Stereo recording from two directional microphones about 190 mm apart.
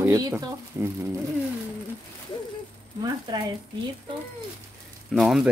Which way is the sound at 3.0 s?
20° right (ahead or behind).